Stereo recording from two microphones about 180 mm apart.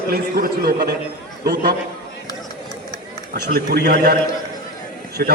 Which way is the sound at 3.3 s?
60° right (ahead or behind).